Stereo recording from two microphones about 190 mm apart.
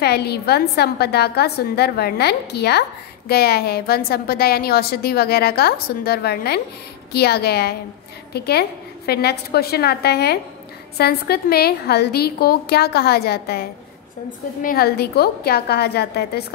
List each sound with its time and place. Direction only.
0.0 s a woman's voice: 60° left (ahead or behind)